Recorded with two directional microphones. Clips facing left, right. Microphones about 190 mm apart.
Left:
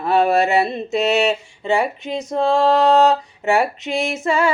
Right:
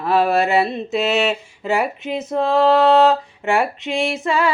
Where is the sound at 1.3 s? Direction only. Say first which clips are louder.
Left 1 dB; 30° left (ahead or behind).